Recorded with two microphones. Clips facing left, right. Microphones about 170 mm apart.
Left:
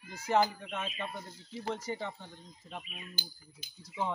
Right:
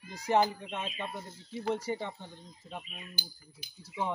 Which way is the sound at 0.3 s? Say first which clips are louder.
Right 1 dB; 20° right (ahead or behind).